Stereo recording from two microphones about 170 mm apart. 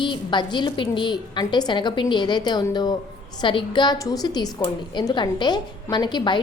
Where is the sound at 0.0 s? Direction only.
25° left (ahead or behind).